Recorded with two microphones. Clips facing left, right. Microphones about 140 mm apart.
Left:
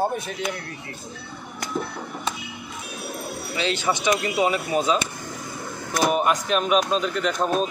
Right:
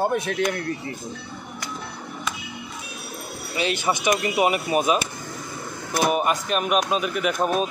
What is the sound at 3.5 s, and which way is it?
Speech, 15° right (ahead or behind).